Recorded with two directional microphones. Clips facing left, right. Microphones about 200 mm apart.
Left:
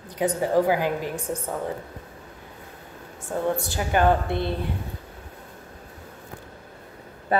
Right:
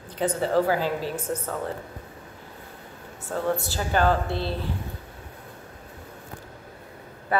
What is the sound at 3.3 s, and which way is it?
A woman's voice, 15° left (ahead or behind).